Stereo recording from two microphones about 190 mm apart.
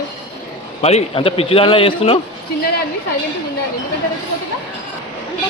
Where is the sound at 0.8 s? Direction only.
35° left (ahead or behind).